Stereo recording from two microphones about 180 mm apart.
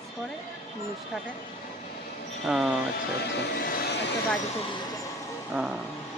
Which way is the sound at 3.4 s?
70° left (ahead or behind).